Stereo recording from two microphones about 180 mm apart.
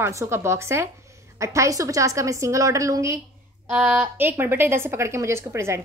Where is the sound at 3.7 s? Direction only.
5° right (ahead or behind).